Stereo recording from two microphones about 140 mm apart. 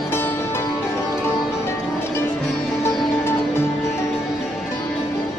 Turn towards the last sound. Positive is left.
turn(degrees=20)  # may be behind; listen again after turning